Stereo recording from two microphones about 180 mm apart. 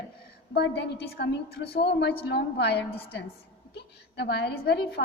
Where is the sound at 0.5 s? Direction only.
70° left (ahead or behind).